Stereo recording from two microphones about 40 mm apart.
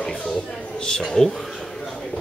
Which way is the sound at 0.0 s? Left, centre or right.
Left.